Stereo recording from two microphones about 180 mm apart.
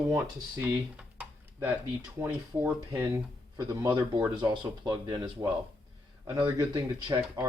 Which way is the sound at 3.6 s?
25° right (ahead or behind).